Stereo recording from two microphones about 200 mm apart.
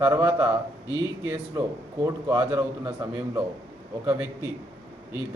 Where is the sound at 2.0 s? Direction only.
15° right (ahead or behind).